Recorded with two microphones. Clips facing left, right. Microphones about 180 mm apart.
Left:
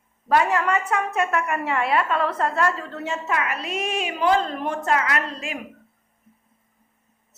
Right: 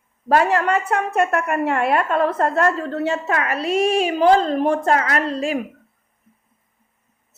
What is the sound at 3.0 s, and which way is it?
A woman's voice, 35° right (ahead or behind).